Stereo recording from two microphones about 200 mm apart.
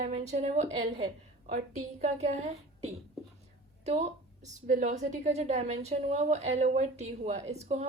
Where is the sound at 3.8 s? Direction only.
35° right (ahead or behind).